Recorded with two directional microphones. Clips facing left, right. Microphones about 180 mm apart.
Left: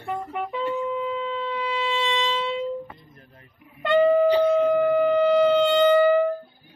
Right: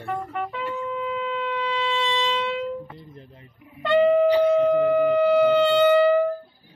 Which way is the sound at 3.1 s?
25° right (ahead or behind).